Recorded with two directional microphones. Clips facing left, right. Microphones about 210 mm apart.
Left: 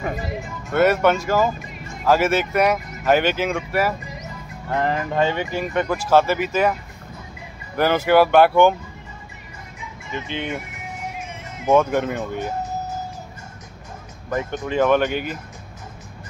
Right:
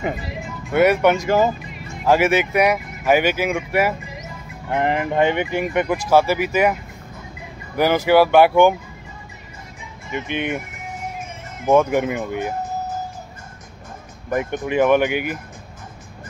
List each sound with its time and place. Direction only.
0.7 s speech: 15° right (ahead or behind)
10.1 s speech: 15° right (ahead or behind)
11.6 s speech: 10° right (ahead or behind)
14.3 s speech: 15° right (ahead or behind)